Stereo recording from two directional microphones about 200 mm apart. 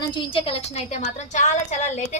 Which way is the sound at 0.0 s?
25° left (ahead or behind).